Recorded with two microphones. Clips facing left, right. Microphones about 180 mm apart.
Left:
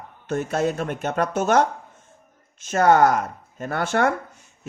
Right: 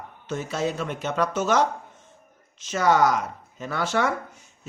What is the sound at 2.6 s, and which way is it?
A man's voice, 55° left (ahead or behind).